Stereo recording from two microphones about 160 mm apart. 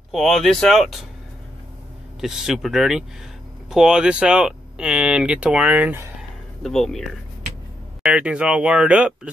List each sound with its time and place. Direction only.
0.1 s speech: centre (ahead or behind)
2.1 s speech: 5° right (ahead or behind)
6.6 s speech: centre (ahead or behind)